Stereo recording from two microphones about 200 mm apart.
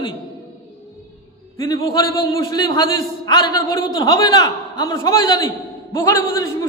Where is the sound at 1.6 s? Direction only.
20° left (ahead or behind).